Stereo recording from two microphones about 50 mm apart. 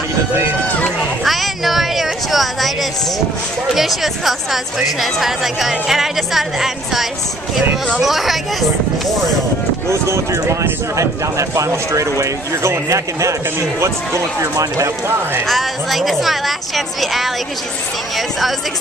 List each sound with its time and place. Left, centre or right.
0.7 s run: left
1.2 s a sound: centre
3.7 s speech: centre
9.8 s speech: right
15.4 s speech: centre